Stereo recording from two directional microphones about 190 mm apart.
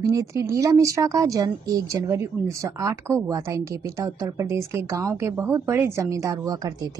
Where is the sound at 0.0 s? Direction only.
15° right (ahead or behind).